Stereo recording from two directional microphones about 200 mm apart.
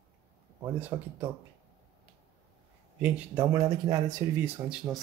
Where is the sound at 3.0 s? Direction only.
10° right (ahead or behind).